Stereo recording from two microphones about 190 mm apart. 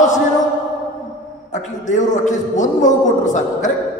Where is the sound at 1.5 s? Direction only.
40° left (ahead or behind).